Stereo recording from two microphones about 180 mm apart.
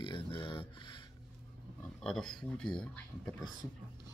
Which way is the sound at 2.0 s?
5° left (ahead or behind).